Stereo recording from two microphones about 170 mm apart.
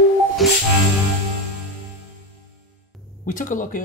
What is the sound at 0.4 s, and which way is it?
Music, centre (ahead or behind).